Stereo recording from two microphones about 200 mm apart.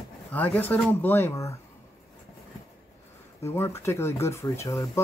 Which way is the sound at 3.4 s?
15° left (ahead or behind).